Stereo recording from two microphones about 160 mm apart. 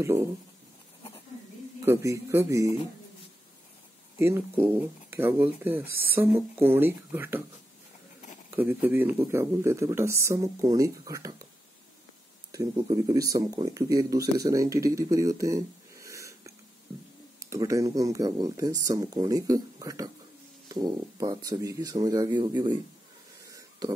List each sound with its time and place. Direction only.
0.0 s speech: 15° right (ahead or behind)
1.9 s speech: 15° right (ahead or behind)
4.2 s speech: 15° right (ahead or behind)
8.5 s speech: 10° right (ahead or behind)
12.9 s speech: 20° right (ahead or behind)
23.4 s a sound: 20° right (ahead or behind)